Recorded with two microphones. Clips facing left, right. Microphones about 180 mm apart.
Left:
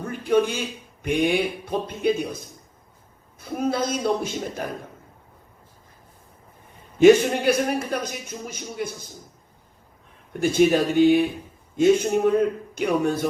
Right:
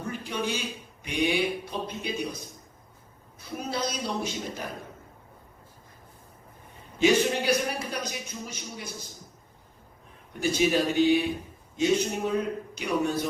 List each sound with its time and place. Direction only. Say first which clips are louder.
0.1 s a sound: left 11 dB; 50° left (ahead or behind)
1.0 s a man's voice: left 5 dB; 50° left (ahead or behind)
3.6 s a man's voice: left 8 dB; 50° left (ahead or behind)
7.0 s a man's voice: left 8 dB; 50° left (ahead or behind)
10.3 s a man's voice: left 6 dB; 50° left (ahead or behind)